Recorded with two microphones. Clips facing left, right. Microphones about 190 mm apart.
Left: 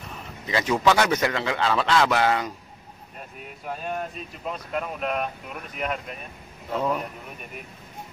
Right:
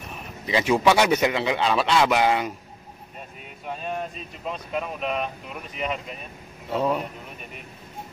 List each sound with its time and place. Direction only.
0.1 s a man's voice: 15° right (ahead or behind)
4.5 s speech: 5° left (ahead or behind)
6.7 s a man's voice: 15° right (ahead or behind)